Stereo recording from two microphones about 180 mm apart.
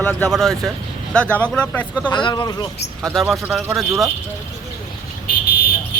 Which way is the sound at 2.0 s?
25° left (ahead or behind).